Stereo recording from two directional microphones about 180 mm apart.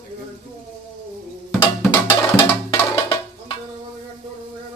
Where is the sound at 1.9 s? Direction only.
25° left (ahead or behind).